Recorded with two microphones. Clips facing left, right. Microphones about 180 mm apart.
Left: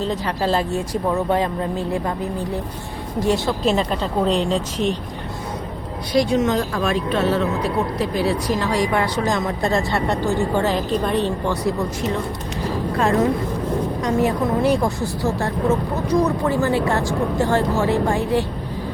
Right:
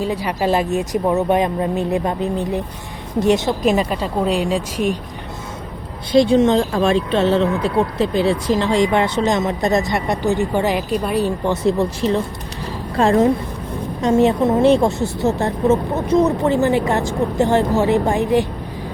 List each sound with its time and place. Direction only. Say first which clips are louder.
0.0 s speech: right 2 dB; 10° right (ahead or behind)
6.1 s speech: right 5 dB; 30° right (ahead or behind); by 11.3 s 10° right (ahead or behind)
11.4 s speech: right 4 dB; 25° right (ahead or behind)